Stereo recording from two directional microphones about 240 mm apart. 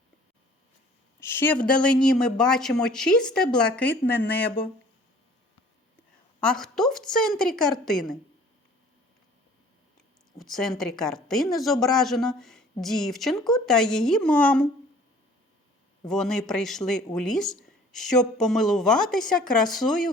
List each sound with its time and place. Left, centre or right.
1.2 s a woman's voice: centre
6.4 s a woman's voice: centre
10.3 s a woman's voice: centre
16.0 s a woman's voice: centre